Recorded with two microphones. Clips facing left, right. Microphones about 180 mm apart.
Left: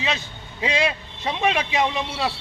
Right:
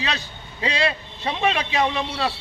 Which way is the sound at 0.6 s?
15° left (ahead or behind).